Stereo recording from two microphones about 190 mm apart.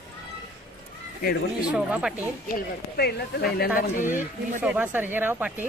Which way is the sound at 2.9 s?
55° left (ahead or behind).